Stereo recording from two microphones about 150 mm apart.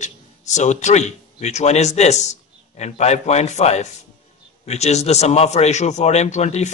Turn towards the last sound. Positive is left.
turn(degrees=50)  # may be behind; listen again after turning